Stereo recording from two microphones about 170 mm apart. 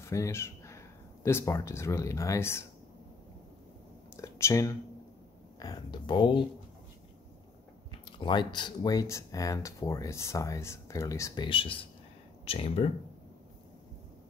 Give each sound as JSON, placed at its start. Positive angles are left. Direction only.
{"t": 0.0, "sound": "speech", "side_deg": 15}
{"t": 4.2, "sound": "speech", "side_deg": 15}
{"t": 8.2, "sound": "speech", "side_deg": 25}
{"t": 11.4, "sound": "speech", "side_deg": 30}